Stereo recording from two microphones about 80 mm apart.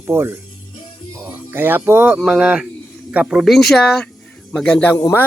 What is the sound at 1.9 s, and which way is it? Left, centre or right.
Speech, centre.